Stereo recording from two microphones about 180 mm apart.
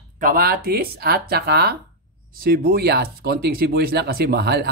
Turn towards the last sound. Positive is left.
turn(degrees=-65)  # may be behind; listen again after turning